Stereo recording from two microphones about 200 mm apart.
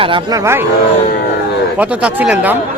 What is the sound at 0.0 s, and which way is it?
Speech, 20° right (ahead or behind).